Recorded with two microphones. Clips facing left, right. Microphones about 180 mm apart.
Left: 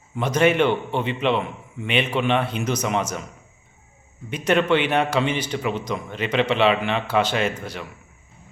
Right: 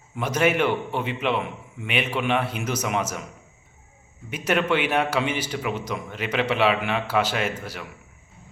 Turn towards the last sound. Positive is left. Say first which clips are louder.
# left 3 dB
turn(degrees=-5)  # may be behind; listen again after turning